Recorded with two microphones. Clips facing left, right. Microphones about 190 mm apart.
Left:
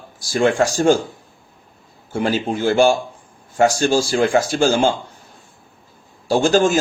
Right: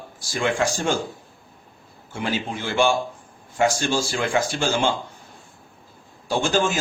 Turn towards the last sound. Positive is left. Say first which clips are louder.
# left 7 dB
turn(degrees=40)  # may be behind; listen again after turning